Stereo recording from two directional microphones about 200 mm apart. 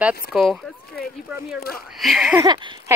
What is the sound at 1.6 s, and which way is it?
Speech, 50° left (ahead or behind).